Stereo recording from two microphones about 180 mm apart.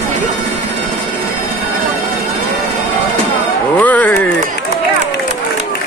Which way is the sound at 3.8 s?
10° left (ahead or behind).